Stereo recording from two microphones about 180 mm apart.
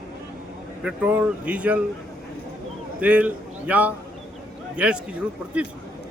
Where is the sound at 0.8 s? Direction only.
5° right (ahead or behind).